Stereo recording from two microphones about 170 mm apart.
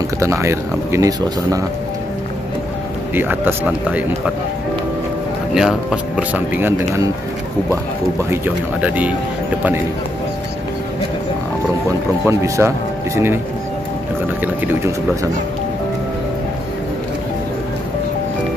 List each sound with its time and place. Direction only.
0.2 s a man's voice: 15° right (ahead or behind)
3.2 s a man's voice: 10° right (ahead or behind)
5.5 s a man's voice: centre (ahead or behind)
8.8 s a man's voice: 10° right (ahead or behind)
12.3 s speech: 15° right (ahead or behind)
14.4 s a man's voice: 15° right (ahead or behind)